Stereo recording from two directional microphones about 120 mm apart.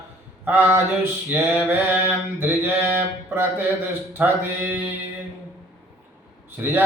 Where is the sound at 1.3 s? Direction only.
15° right (ahead or behind).